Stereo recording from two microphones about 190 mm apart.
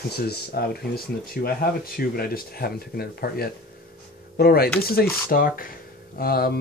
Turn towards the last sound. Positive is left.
turn(degrees=55)  # may be behind; listen again after turning